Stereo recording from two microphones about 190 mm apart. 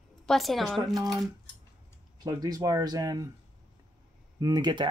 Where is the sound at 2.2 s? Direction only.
20° right (ahead or behind).